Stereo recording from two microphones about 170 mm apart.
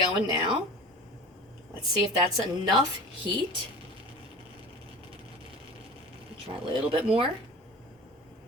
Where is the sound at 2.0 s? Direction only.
25° right (ahead or behind).